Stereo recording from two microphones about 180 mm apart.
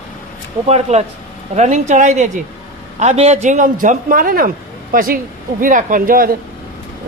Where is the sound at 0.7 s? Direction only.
35° right (ahead or behind).